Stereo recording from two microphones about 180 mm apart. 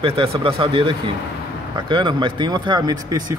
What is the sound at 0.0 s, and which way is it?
Speech, 30° right (ahead or behind).